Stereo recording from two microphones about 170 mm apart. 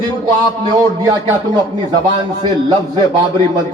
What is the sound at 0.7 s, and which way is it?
A man's voice, 25° right (ahead or behind).